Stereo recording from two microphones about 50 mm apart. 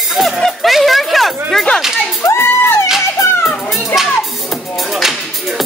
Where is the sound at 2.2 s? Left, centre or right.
Left.